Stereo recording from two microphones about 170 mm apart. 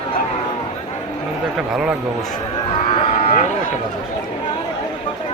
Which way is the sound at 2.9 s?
35° left (ahead or behind).